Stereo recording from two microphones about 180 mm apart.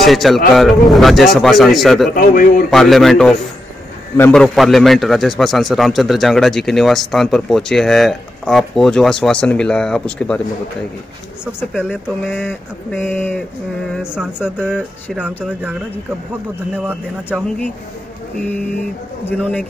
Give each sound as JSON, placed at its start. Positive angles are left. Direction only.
{"t": 0.0, "sound": "a man's voice", "side_deg": 0}
{"t": 2.1, "sound": "a man's voice", "side_deg": 50}
{"t": 2.7, "sound": "a man's voice", "side_deg": 0}
{"t": 11.4, "sound": "a man's voice", "side_deg": -5}
{"t": 12.4, "sound": "speech", "side_deg": 10}
{"t": 13.9, "sound": "a man's voice", "side_deg": -5}
{"t": 16.7, "sound": "speech", "side_deg": -10}
{"t": 19.2, "sound": "speech", "side_deg": 10}